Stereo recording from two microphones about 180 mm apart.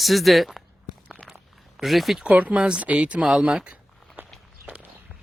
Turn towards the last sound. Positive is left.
turn(degrees=-10)  # may be behind; listen again after turning